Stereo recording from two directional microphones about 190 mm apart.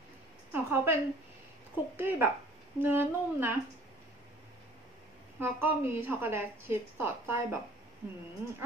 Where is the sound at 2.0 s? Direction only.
10° right (ahead or behind).